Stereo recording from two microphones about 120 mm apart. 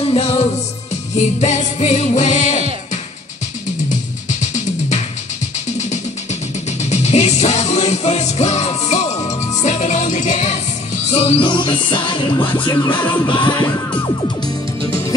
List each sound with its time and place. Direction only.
0.0 s music: 60° left (ahead or behind)
1.1 s music: 75° left (ahead or behind)
3.9 s music: 85° left
6.8 s music: 70° left (ahead or behind)
11.1 s music: 55° left (ahead or behind); by 13.1 s 40° left (ahead or behind)